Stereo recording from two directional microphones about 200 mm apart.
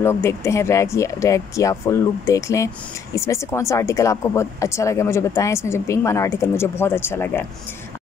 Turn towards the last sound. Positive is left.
turn(degrees=10)  # may be behind; listen again after turning